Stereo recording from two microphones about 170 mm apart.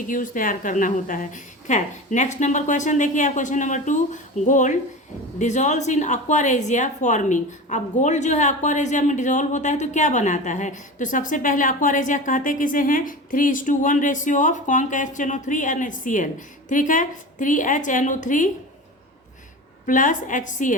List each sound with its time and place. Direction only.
0.1 s a woman's voice: 55° left (ahead or behind)
19.8 s a woman's voice: 50° left (ahead or behind)